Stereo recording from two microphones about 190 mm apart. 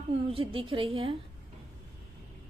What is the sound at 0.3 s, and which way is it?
Speech, 25° right (ahead or behind).